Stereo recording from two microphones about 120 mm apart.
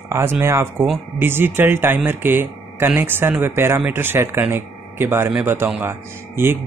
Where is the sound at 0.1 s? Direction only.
20° right (ahead or behind).